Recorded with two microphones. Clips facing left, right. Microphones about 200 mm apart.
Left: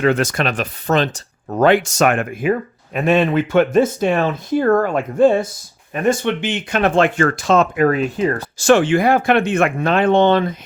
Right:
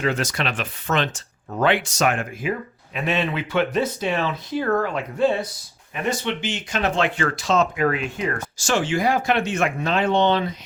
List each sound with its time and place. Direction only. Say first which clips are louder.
0.0 s speech: left 7 dB; 55° left (ahead or behind)
7.9 s speech: left 7 dB; 40° left (ahead or behind)
8.5 s speech: left 10 dB; 60° left (ahead or behind)